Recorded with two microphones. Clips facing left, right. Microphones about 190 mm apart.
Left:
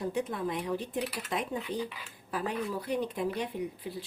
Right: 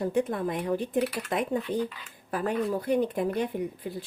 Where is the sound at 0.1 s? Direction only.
50° right (ahead or behind).